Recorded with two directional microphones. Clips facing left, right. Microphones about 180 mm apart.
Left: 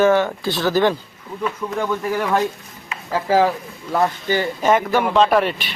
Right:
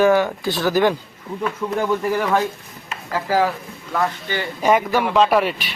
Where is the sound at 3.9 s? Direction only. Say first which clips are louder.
Left 4 dB; 40° left (ahead or behind).